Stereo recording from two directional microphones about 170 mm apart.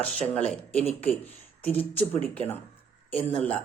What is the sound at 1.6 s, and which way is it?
Speech, 10° left (ahead or behind).